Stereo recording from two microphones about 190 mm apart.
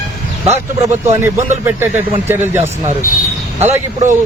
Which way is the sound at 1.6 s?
10° right (ahead or behind).